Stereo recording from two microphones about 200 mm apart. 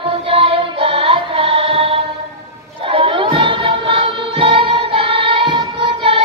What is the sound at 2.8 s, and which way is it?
Music, 30° right (ahead or behind).